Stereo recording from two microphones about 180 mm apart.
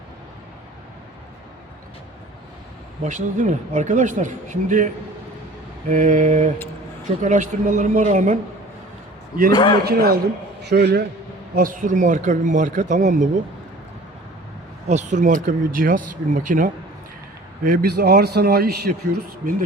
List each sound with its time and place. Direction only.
3.0 s speech: 45° right (ahead or behind)
5.9 s speech: 45° right (ahead or behind)
9.5 s a man's voice: 25° left (ahead or behind)
9.8 s a man's voice: 60° right (ahead or behind)
11.5 s speech: 50° right (ahead or behind)
14.8 s speech: 40° right (ahead or behind)
17.7 s a man's voice: 65° right (ahead or behind)